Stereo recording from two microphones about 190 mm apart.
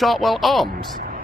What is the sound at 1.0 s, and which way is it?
Music, 50° right (ahead or behind).